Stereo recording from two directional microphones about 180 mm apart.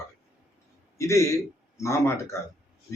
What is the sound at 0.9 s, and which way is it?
Speech, 15° left (ahead or behind).